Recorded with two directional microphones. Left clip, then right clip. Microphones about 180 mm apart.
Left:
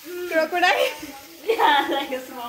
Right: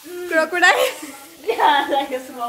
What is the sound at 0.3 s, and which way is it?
Speech, 20° right (ahead or behind).